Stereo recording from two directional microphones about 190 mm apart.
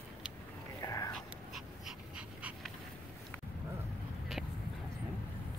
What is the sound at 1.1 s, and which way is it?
Dog, centre (ahead or behind).